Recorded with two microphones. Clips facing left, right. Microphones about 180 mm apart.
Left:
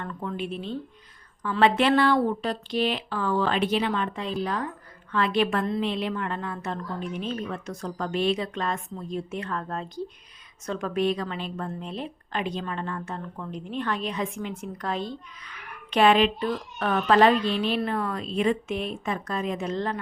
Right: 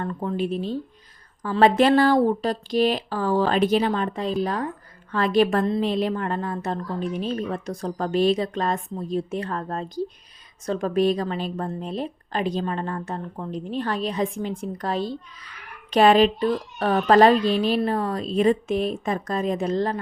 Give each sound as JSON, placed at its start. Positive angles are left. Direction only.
{"t": 0.0, "sound": "a woman's voice", "side_deg": -35}